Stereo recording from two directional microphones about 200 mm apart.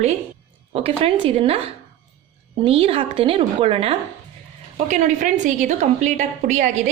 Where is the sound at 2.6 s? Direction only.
30° right (ahead or behind).